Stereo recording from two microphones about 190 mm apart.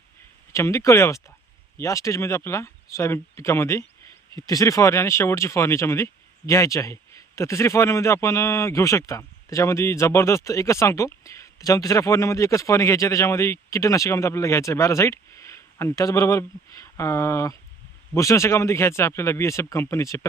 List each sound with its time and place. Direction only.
0.5 s speech: 15° left (ahead or behind)